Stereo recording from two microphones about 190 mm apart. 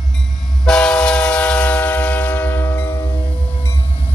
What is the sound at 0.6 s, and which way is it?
Train, 5° left (ahead or behind).